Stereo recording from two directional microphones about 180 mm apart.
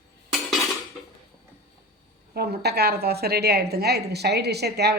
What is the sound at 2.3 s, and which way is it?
A woman's voice, 60° right (ahead or behind).